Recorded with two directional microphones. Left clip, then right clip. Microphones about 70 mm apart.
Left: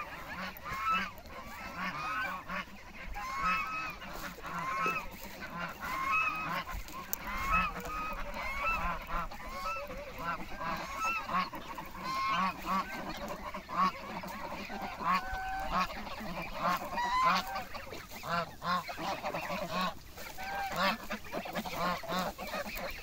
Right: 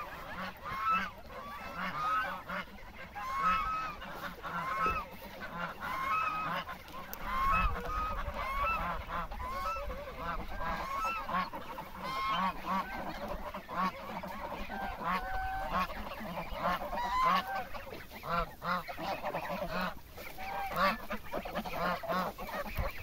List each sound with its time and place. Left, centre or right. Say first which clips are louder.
0.4 s goose: right 1 dB; right
1.8 s goose: right 3 dB; right
3.2 s goose: right 1 dB; right
10.9 s goose: left 2 dB; right
12.4 s goose: left 1 dB; centre
16.9 s goose: left 1 dB; centre
17.3 s goose: even; centre
18.2 s goose: even; left
18.6 s goose: left 2 dB; left
20.7 s goose: right 2 dB; left
21.6 s duck: right 1 dB; left